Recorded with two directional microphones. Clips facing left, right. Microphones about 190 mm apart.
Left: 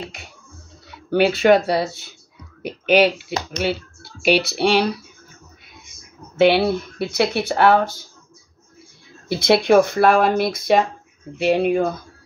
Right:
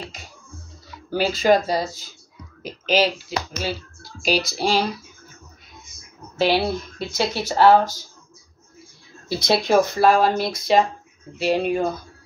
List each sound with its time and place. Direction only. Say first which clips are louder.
0.9 s speech: left 6 dB; 65° left (ahead or behind)
6.3 s speech: left 5 dB; 60° left (ahead or behind)
9.3 s speech: left 4 dB; 55° left (ahead or behind)